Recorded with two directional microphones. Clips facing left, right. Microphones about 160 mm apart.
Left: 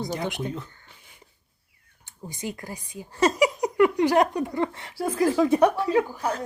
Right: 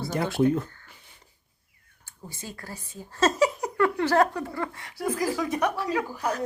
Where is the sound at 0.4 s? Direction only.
50° right (ahead or behind).